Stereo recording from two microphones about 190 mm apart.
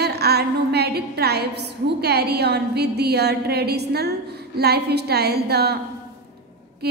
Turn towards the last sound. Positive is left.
turn(degrees=-60)  # may be behind; listen again after turning